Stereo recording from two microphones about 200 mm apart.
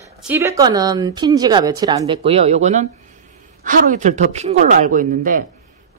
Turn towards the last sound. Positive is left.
turn(degrees=-40)  # may be behind; listen again after turning